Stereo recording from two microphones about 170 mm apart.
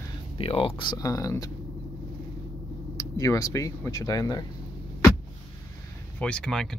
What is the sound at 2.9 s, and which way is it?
Speech, 20° left (ahead or behind).